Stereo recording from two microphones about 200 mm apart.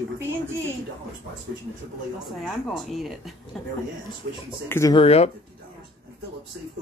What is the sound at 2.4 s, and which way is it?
Speech, centre (ahead or behind).